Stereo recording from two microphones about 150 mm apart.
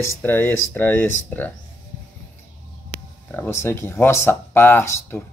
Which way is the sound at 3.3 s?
15° left (ahead or behind).